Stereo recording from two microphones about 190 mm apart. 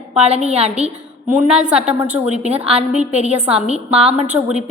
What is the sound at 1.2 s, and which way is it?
Speech, 10° right (ahead or behind).